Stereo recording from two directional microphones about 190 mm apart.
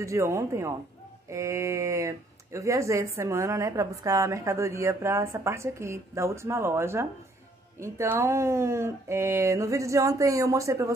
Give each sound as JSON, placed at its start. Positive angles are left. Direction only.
{"t": 0.0, "sound": "speech", "side_deg": -15}